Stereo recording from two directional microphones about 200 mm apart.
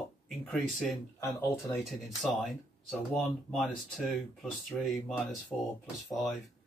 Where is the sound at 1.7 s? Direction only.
Centre (ahead or behind).